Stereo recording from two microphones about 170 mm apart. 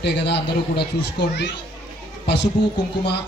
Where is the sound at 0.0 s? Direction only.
75° left (ahead or behind).